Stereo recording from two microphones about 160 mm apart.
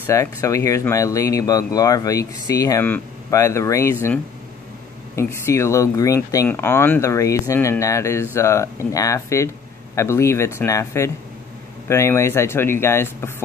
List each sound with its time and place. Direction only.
0.0 s speech: 20° left (ahead or behind)